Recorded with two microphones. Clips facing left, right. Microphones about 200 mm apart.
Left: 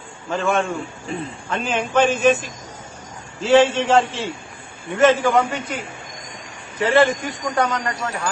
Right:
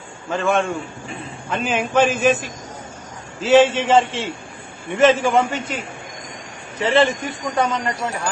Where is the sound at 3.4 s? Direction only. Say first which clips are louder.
Right 1 dB; centre (ahead or behind).